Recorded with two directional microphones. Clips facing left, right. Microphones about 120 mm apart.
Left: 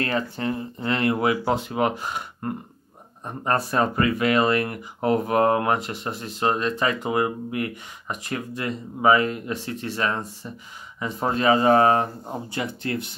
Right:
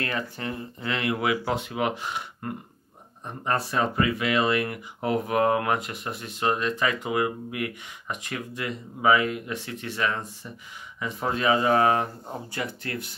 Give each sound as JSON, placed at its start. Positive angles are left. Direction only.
{"t": 0.0, "sound": "speech", "side_deg": 30}
{"t": 12.3, "sound": "speech", "side_deg": 25}